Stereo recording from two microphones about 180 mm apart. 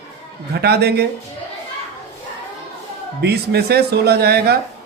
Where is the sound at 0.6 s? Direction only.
65° right (ahead or behind).